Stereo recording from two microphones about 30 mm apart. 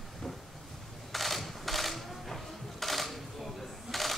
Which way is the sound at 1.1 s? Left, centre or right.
Centre.